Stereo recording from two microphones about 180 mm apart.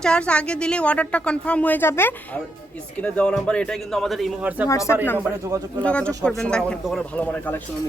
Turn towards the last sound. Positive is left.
turn(degrees=10)  # may be behind; listen again after turning